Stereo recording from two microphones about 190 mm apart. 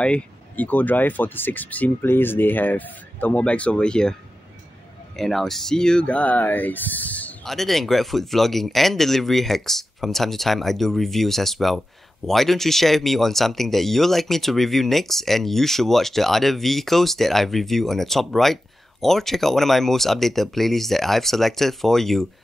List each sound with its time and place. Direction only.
0.0 s speech: 5° left (ahead or behind)